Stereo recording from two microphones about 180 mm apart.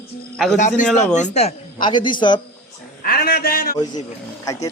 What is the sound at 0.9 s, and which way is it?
Speech, 40° left (ahead or behind).